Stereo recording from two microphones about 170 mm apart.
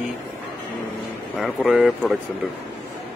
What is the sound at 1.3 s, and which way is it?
Speech, centre (ahead or behind).